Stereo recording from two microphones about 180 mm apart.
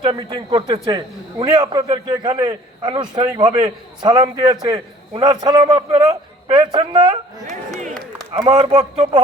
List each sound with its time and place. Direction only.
0.0 s a man's voice: 20° right (ahead or behind)